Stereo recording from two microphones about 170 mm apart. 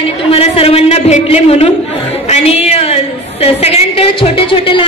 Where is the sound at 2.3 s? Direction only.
40° left (ahead or behind).